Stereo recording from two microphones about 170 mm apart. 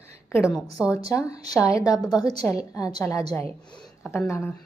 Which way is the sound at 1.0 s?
20° left (ahead or behind).